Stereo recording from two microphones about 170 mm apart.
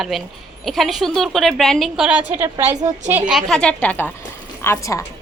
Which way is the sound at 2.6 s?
40° right (ahead or behind).